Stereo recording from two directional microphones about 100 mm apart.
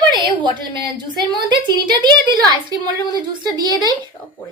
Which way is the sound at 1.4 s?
50° right (ahead or behind).